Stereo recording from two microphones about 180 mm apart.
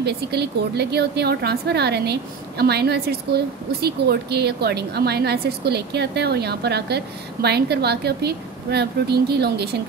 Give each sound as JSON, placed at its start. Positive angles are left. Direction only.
{"t": 0.0, "sound": "a woman's voice", "side_deg": -65}